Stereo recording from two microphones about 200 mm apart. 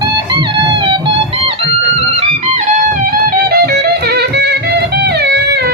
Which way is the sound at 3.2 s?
50° right (ahead or behind).